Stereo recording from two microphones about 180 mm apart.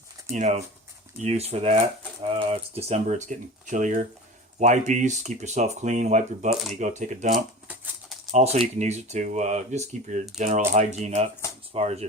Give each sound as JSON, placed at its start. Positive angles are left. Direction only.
{"t": 0.3, "sound": "speech", "side_deg": -40}
{"t": 7.3, "sound": "a sound", "side_deg": 0}
{"t": 8.3, "sound": "speech", "side_deg": -35}